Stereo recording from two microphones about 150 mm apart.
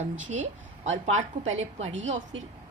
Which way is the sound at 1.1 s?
50° right (ahead or behind).